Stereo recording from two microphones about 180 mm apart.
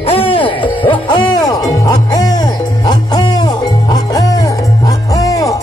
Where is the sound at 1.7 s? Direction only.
20° left (ahead or behind).